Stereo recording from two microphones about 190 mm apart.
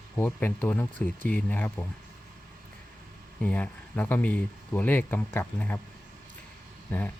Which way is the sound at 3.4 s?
10° left (ahead or behind).